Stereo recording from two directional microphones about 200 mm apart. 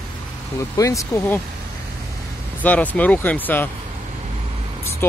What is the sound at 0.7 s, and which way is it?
Speech, 15° left (ahead or behind).